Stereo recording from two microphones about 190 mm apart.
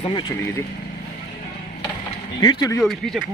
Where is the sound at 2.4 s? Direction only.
20° left (ahead or behind).